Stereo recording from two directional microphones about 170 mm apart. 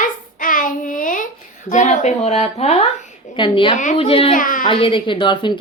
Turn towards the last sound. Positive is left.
turn(degrees=30)  # may be behind; listen again after turning